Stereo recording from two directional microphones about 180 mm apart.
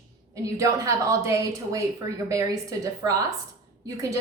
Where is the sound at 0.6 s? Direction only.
15° right (ahead or behind).